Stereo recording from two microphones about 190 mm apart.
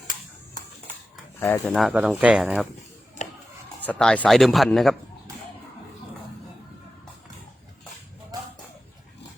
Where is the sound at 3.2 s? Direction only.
40° left (ahead or behind).